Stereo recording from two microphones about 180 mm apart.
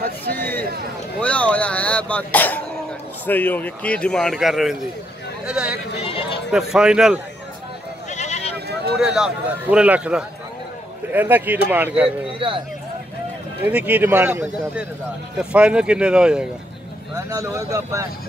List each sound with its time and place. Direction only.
0.3 s a sound: 10° left (ahead or behind)
1.2 s a man's voice: 5° left (ahead or behind)
6.0 s a sound: 30° left (ahead or behind)
6.5 s a man's voice: 5° right (ahead or behind)
8.1 s sheep: 40° left (ahead or behind)
8.9 s a man's voice: 5° right (ahead or behind)
12.3 s speech: 30° right (ahead or behind)
13.7 s a man's voice: 10° right (ahead or behind)
17.1 s speech: 20° right (ahead or behind)